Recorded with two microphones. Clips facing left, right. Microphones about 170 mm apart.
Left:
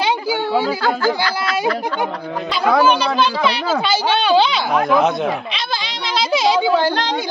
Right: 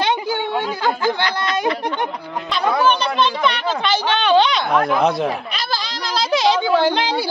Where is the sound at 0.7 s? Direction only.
15° right (ahead or behind).